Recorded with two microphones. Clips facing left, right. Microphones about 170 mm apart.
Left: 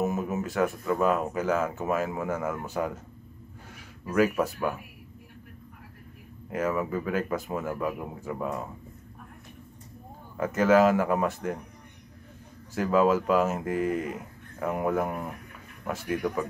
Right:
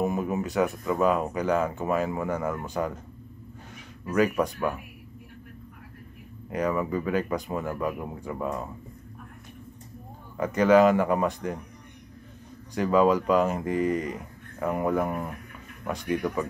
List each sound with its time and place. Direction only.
0.0 s speech: 5° left (ahead or behind)
4.0 s speech: 5° left (ahead or behind)
6.5 s speech: 5° left (ahead or behind)
10.3 s speech: 5° left (ahead or behind)
12.7 s speech: 5° left (ahead or behind)